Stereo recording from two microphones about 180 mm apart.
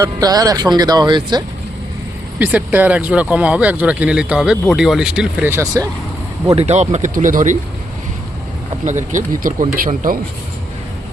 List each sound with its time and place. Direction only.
0.0 s speech: 20° right (ahead or behind)
2.4 s speech: 10° right (ahead or behind)
6.6 s speech: 40° right (ahead or behind)
9.1 s speech: 50° right (ahead or behind)